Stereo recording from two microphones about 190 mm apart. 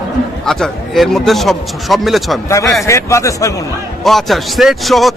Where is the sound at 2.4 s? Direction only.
15° left (ahead or behind).